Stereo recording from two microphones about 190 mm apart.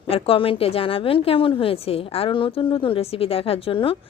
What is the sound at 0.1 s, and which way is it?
A woman's voice, 30° left (ahead or behind).